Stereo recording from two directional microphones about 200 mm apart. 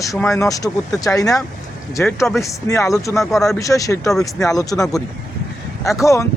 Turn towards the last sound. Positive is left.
turn(degrees=15)  # may be behind; listen again after turning